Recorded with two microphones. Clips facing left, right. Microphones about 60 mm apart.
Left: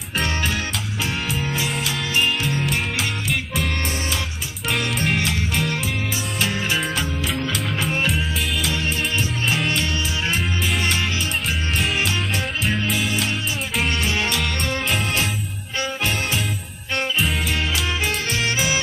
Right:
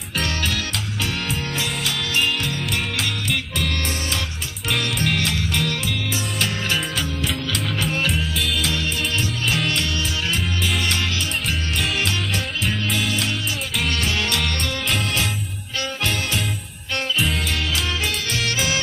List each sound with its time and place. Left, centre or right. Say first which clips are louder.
1.6 s music: left 1 dB; centre
4.6 s music: left 1 dB; centre
8.1 s music: even; centre
11.8 s music: left 1 dB; centre
13.8 s music: even; centre
18.4 s music: left 1 dB; centre